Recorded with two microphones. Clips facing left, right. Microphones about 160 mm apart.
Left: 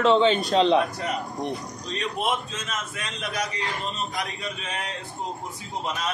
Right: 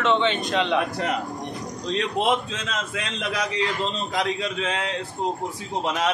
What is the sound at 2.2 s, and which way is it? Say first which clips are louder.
A man's voice: right 4 dB; 90° right.